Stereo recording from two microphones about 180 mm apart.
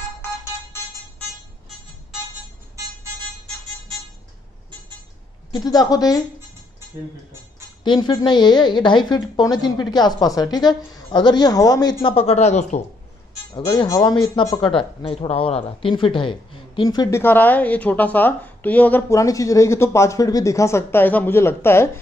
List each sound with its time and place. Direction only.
5.5 s a woman's voice: 20° left (ahead or behind)
7.8 s a woman's voice: 25° left (ahead or behind)
13.7 s a woman's voice: 20° left (ahead or behind)
17.2 s a woman's voice: 10° left (ahead or behind)